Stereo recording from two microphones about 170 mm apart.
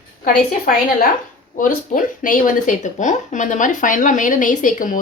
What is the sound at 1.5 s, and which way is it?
Speech, 50° left (ahead or behind).